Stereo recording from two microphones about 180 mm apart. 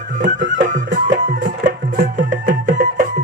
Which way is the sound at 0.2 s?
45° right (ahead or behind).